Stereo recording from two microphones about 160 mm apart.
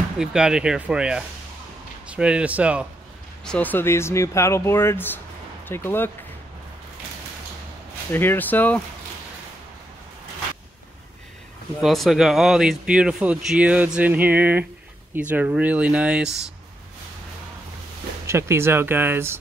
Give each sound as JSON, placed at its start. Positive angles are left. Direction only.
{"t": 0.2, "sound": "speech", "side_deg": -5}
{"t": 3.4, "sound": "speech", "side_deg": 10}
{"t": 8.1, "sound": "speech", "side_deg": 15}
{"t": 11.8, "sound": "speech", "side_deg": 0}
{"t": 18.2, "sound": "speech", "side_deg": -15}